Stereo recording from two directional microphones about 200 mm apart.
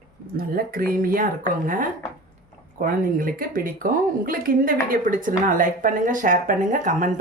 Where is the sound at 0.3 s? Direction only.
45° right (ahead or behind).